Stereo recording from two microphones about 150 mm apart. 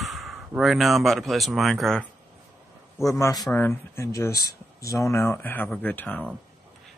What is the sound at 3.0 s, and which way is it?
A man's voice, 20° left (ahead or behind).